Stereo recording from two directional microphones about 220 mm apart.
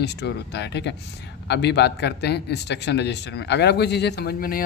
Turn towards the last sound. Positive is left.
turn(degrees=40)  # may be behind; listen again after turning